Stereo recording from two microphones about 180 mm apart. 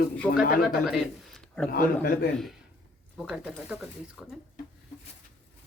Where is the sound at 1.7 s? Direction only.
55° left (ahead or behind).